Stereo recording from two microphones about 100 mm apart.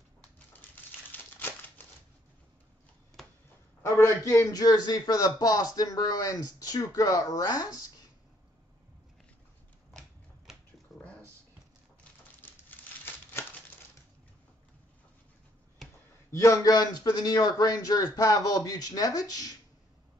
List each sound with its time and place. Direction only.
1.1 s crumpling: 20° left (ahead or behind)
3.8 s a man's voice: 30° left (ahead or behind)
10.9 s a sound: centre (ahead or behind)
12.4 s crumpling: 20° left (ahead or behind)
16.3 s a man's voice: 30° left (ahead or behind)